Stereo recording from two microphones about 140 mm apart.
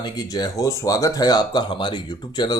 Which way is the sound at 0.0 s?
30° left (ahead or behind).